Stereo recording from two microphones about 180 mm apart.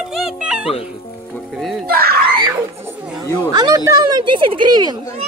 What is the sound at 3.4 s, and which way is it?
Speech, 20° right (ahead or behind).